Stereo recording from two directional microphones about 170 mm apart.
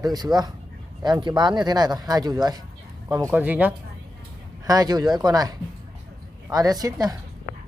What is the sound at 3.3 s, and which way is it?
Speech, 10° right (ahead or behind).